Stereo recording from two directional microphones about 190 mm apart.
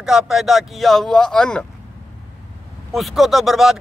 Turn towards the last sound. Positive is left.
turn(degrees=0)  # may be behind; listen again after turning